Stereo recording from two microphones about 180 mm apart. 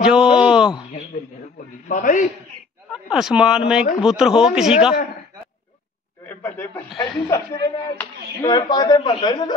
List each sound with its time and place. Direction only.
0.0 s a sound: 5° right (ahead or behind)
1.9 s a man's voice: 50° left (ahead or behind)
2.9 s speech: 5° right (ahead or behind)
6.2 s a man's voice: 10° left (ahead or behind)